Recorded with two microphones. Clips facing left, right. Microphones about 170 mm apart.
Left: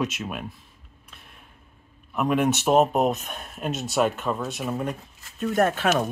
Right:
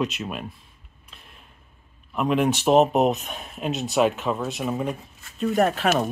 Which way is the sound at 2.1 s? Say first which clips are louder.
Right 1 dB; 5° left (ahead or behind).